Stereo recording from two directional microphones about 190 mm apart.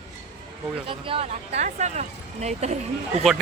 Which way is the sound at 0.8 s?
30° right (ahead or behind).